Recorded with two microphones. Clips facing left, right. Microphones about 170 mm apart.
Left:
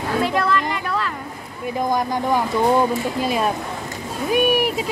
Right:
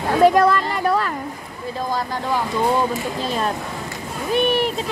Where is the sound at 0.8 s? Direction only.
45° right (ahead or behind).